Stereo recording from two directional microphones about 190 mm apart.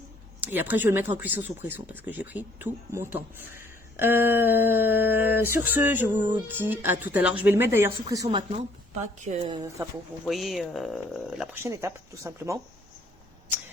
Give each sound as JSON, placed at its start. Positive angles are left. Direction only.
{"t": 0.4, "sound": "speech", "side_deg": -10}
{"t": 8.0, "sound": "a woman's voice", "side_deg": -25}
{"t": 8.9, "sound": "a woman's voice", "side_deg": -35}
{"t": 10.2, "sound": "speech", "side_deg": 0}
{"t": 11.5, "sound": "speech", "side_deg": -15}